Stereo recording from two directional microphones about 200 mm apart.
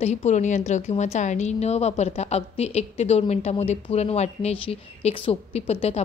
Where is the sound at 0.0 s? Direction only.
35° left (ahead or behind).